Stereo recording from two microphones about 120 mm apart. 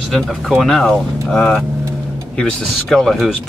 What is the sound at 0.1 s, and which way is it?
Speech, centre (ahead or behind).